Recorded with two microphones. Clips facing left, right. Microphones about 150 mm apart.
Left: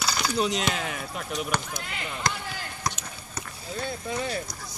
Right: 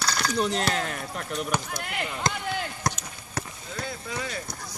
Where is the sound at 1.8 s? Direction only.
60° right (ahead or behind).